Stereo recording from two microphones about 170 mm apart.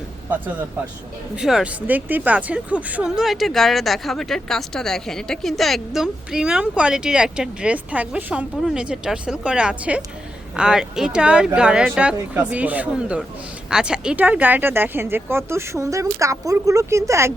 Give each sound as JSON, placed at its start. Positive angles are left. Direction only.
{"t": 1.4, "sound": "speech", "side_deg": -5}